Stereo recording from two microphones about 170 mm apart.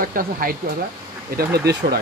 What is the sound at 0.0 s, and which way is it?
Speech, 55° right (ahead or behind).